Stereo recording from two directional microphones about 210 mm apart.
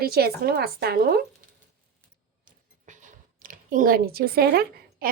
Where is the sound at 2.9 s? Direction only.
40° right (ahead or behind).